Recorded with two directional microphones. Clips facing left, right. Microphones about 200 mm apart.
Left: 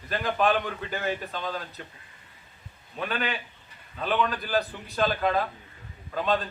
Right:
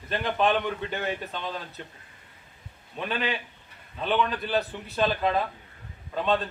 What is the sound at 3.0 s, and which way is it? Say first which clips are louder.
Speech: right 1 dB; centre (ahead or behind).